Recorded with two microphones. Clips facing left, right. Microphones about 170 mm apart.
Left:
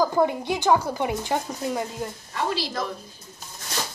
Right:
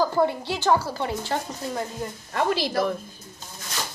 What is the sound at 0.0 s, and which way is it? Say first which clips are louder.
Speech: left 1 dB; 15° left (ahead or behind).